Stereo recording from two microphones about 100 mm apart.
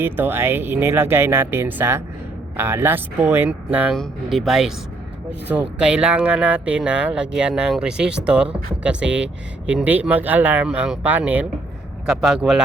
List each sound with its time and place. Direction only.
0.0 s speech: 20° right (ahead or behind)
3.9 s speech: centre (ahead or behind)